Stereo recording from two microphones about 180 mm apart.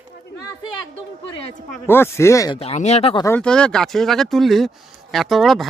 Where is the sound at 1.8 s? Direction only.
15° left (ahead or behind).